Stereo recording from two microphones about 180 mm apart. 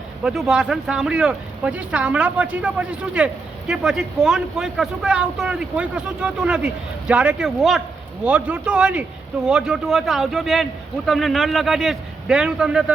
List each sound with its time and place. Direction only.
0.2 s a man's voice: 5° right (ahead or behind)